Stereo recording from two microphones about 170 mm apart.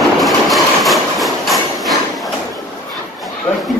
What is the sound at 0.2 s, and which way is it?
Train, centre (ahead or behind).